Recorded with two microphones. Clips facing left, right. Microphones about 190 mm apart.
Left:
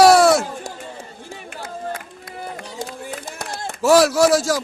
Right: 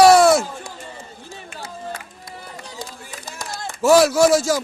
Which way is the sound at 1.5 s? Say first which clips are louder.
Left 3 dB; 55° left (ahead or behind).